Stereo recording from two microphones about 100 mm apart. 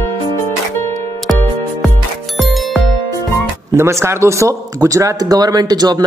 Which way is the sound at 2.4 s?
Centre (ahead or behind).